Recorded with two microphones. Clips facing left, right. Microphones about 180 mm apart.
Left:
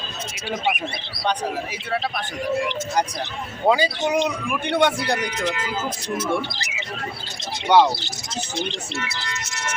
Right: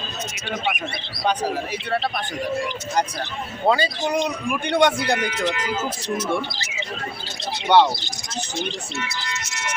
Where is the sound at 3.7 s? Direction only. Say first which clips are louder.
Left 2 dB; 10° left (ahead or behind).